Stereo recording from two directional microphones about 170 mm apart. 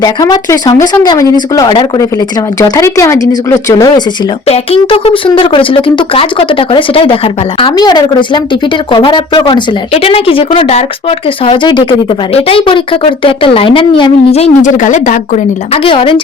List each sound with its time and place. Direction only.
0.0 s speech: 20° left (ahead or behind)
4.4 s speech: 35° left (ahead or behind)
15.7 s speech: 30° left (ahead or behind)